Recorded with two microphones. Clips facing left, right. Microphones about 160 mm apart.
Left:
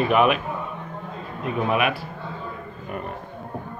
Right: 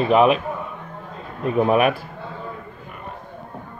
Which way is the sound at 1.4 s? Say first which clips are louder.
Right 5 dB; 40° right (ahead or behind).